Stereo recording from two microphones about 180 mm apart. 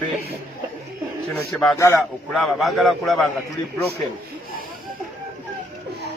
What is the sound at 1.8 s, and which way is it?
Speech, 15° left (ahead or behind).